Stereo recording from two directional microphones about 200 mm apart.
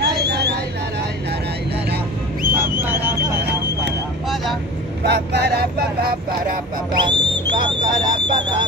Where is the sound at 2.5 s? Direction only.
10° right (ahead or behind).